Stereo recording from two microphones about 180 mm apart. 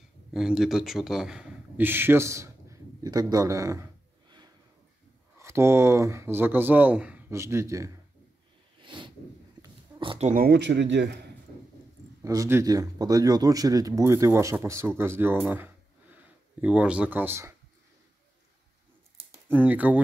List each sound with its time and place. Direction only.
0.3 s speech: 5° right (ahead or behind)
8.7 s a sound: 25° right (ahead or behind)
10.2 s speech: 50° right (ahead or behind); by 11.2 s 75° right (ahead or behind)
12.2 s speech: 15° right (ahead or behind)
19.5 s speech: 10° right (ahead or behind)